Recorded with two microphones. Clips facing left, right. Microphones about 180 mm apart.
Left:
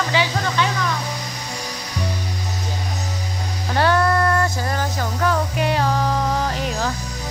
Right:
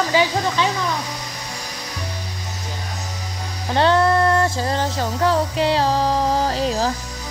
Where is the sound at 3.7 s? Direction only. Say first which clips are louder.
Right 2 dB; 25° right (ahead or behind).